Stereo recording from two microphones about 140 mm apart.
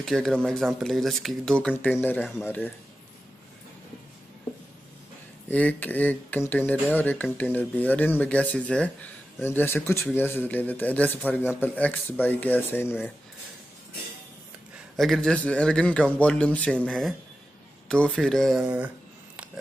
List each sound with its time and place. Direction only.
0.0 s a man's voice: 5° left (ahead or behind)
5.5 s a man's voice: 10° left (ahead or behind)
15.0 s a man's voice: centre (ahead or behind)